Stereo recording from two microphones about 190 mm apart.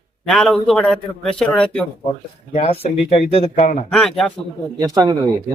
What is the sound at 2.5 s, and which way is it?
Speech, 30° left (ahead or behind).